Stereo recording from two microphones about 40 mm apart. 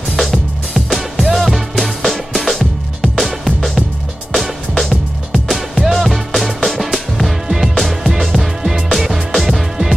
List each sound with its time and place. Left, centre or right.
0.1 s music: centre